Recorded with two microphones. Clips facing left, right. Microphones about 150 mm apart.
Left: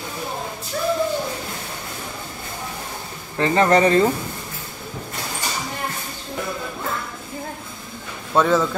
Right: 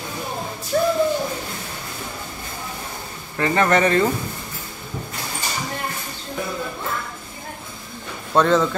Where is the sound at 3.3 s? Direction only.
25° left (ahead or behind).